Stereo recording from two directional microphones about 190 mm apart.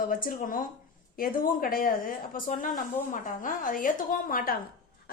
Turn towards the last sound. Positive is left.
turn(degrees=50)  # may be behind; listen again after turning